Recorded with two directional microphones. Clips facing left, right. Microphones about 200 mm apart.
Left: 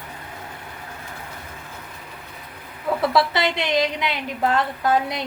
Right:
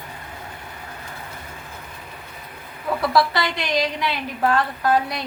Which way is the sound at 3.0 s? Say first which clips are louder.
Even; 25° left (ahead or behind).